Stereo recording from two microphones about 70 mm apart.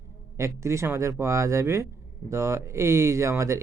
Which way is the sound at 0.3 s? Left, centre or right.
Right.